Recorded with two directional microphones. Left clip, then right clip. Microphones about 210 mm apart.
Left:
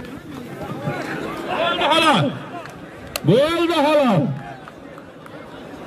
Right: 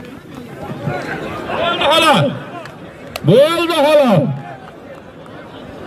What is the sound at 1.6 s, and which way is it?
Chatter, 55° right (ahead or behind).